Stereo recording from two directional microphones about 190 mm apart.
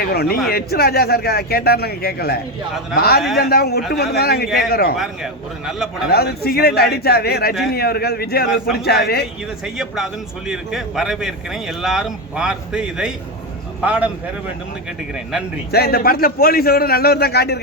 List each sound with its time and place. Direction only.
0.1 s speech: 55° left (ahead or behind)
3.2 s a man's voice: centre (ahead or behind)
3.5 s a man's voice: 55° left (ahead or behind)
4.9 s a man's voice: centre (ahead or behind)
6.1 s speech: 55° left (ahead or behind)
8.4 s a man's voice: 5° right (ahead or behind)
8.8 s speech: 55° left (ahead or behind)
9.6 s a man's voice: centre (ahead or behind)
15.7 s a man's voice: 55° left (ahead or behind)